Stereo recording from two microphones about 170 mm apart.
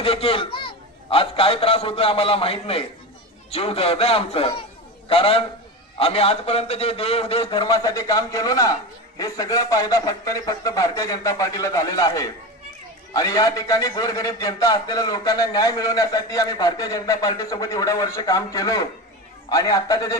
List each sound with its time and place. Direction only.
0.0 s a man's voice: 35° left (ahead or behind)
7.7 s a man's voice: 20° left (ahead or behind)